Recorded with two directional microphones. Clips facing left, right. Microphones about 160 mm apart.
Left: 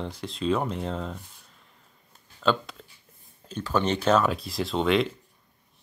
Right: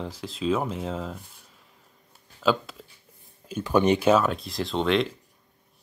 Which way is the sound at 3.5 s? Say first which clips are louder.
Right 5 dB; 15° right (ahead or behind).